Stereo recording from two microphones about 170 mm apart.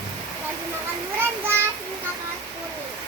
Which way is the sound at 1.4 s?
15° right (ahead or behind).